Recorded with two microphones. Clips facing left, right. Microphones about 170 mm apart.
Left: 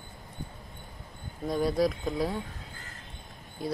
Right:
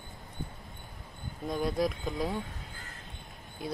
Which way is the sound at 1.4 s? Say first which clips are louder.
Left 4 dB; 5° left (ahead or behind).